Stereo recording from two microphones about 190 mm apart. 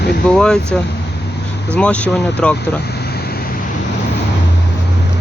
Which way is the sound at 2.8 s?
55° left (ahead or behind).